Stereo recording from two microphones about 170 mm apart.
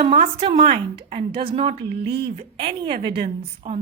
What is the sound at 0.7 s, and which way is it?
Speech, 70° right (ahead or behind).